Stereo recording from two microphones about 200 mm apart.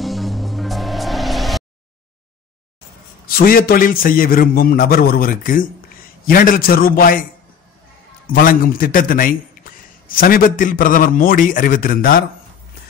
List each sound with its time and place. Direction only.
0.0 s music: centre (ahead or behind)
3.3 s a man's voice: 45° left (ahead or behind)
8.3 s a man's voice: 45° left (ahead or behind)